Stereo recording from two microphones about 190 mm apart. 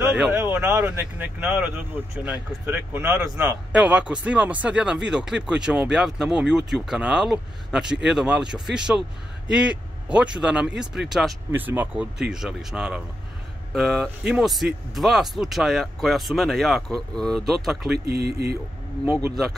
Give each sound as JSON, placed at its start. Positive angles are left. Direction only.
{"t": 0.0, "sound": "speech", "side_deg": -5}
{"t": 17.9, "sound": "speech", "side_deg": -55}